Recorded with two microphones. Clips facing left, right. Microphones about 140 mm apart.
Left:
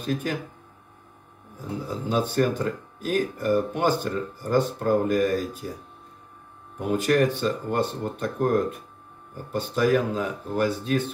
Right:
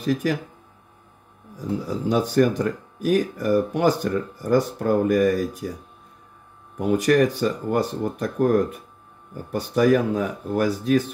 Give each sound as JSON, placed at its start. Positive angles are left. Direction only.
{"t": 0.0, "sound": "speech", "side_deg": -85}
{"t": 1.9, "sound": "speech", "side_deg": -90}
{"t": 7.0, "sound": "speech", "side_deg": -90}